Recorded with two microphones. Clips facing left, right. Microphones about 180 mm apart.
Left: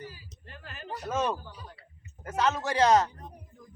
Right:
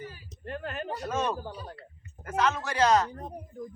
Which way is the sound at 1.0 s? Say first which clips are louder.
Left 1 dB; 5° left (ahead or behind).